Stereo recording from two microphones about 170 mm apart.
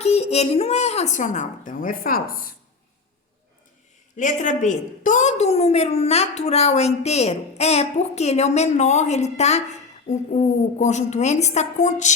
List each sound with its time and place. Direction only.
0.0 s a woman's voice: 40° left (ahead or behind); by 2.5 s 60° left (ahead or behind)
4.2 s a woman's voice: 50° left (ahead or behind)